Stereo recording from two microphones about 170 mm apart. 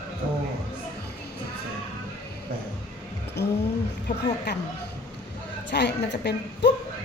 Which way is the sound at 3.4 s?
80° left.